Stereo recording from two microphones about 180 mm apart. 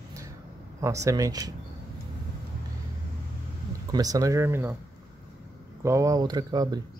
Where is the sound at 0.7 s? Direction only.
15° right (ahead or behind).